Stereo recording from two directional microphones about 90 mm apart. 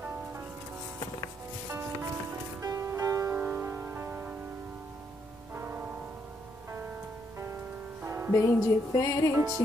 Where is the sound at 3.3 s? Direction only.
20° right (ahead or behind).